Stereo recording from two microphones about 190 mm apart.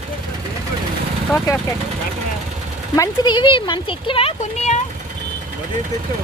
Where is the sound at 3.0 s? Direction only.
25° left (ahead or behind).